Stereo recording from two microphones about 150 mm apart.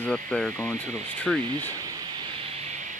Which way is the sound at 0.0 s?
5° left (ahead or behind).